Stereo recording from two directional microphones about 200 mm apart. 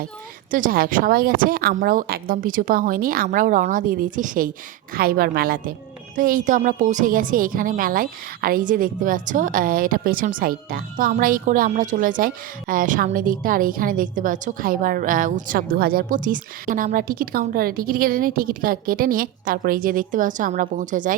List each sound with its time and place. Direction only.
0.5 s a woman's voice: 45° right (ahead or behind)